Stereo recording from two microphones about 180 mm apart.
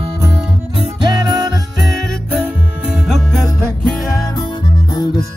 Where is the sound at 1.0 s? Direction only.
25° right (ahead or behind).